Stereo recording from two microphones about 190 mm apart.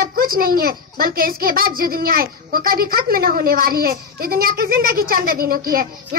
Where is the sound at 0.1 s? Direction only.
50° right (ahead or behind).